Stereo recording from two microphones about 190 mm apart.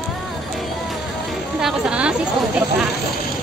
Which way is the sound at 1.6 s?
5° right (ahead or behind).